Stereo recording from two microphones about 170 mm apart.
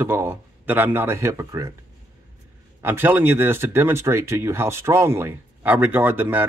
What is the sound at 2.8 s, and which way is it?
Speech, 10° right (ahead or behind).